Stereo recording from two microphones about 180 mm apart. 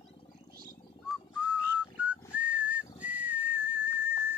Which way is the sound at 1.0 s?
5° right (ahead or behind).